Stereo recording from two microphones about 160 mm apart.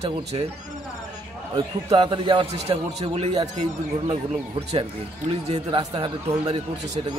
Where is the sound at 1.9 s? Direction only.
30° right (ahead or behind).